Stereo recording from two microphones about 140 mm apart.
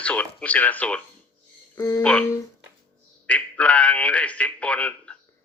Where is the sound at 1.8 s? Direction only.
25° left (ahead or behind).